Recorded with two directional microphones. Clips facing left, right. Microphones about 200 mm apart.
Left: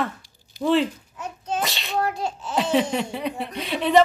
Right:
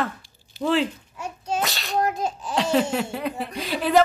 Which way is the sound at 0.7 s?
5° right (ahead or behind).